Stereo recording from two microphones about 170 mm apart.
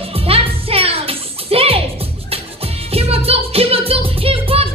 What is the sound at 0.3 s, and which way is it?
Music, 35° right (ahead or behind).